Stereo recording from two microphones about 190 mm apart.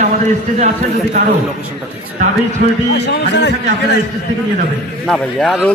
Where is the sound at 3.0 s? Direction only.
65° left (ahead or behind).